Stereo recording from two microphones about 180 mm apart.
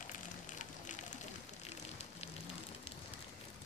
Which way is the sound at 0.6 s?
45° left (ahead or behind).